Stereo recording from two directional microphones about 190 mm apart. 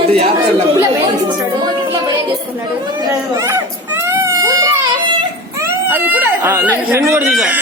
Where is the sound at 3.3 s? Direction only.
15° right (ahead or behind).